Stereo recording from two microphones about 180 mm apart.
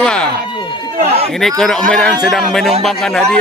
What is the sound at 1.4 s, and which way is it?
A man's voice, centre (ahead or behind).